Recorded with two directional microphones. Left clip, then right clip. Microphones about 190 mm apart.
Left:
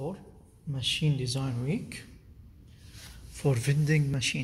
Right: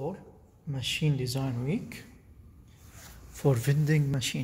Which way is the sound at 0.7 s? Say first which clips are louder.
Left 1 dB; 10° right (ahead or behind).